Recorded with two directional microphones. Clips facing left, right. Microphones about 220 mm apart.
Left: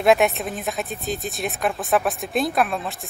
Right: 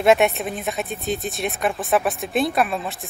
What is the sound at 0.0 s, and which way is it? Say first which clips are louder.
Speech: right 1 dB; centre (ahead or behind).